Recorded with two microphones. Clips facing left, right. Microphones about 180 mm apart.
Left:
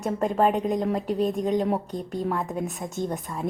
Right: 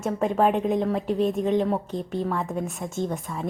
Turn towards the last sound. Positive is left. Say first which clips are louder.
# right 1 dB
turn(degrees=0)  # may be behind; listen again after turning